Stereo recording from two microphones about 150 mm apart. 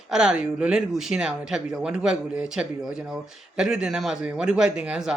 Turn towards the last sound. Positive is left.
turn(degrees=-5)  # may be behind; listen again after turning